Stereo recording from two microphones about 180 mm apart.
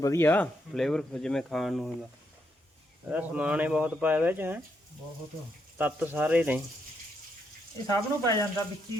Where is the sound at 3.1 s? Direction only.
5° right (ahead or behind).